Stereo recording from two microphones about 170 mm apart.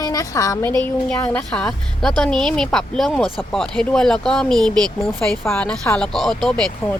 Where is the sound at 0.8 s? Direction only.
10° left (ahead or behind).